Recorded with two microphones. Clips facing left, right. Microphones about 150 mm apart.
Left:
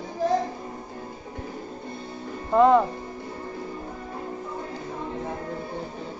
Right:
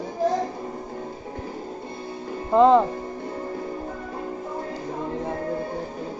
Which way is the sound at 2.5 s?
20° right (ahead or behind).